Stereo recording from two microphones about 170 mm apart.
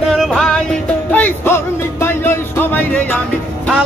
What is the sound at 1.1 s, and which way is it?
Music, 10° left (ahead or behind).